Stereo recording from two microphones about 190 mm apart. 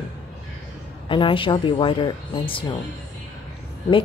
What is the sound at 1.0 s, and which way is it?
Speech, 25° left (ahead or behind).